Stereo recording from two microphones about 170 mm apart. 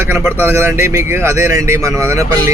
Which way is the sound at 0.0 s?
15° right (ahead or behind).